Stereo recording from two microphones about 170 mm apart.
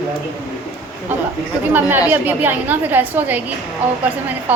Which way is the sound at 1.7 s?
10° right (ahead or behind).